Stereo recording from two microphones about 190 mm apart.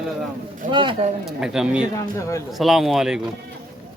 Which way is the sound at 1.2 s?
5° right (ahead or behind).